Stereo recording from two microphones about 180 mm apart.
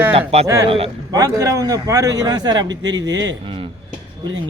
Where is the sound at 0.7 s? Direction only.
30° right (ahead or behind).